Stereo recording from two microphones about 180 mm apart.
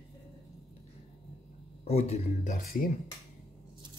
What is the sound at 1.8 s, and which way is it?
Speech, 35° left (ahead or behind).